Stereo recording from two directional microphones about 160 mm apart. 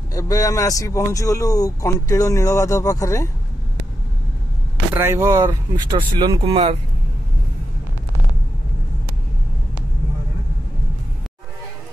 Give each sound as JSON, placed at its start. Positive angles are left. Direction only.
{"t": 0.1, "sound": "a man's voice", "side_deg": 20}
{"t": 4.9, "sound": "speech", "side_deg": -15}
{"t": 6.5, "sound": "speech", "side_deg": -40}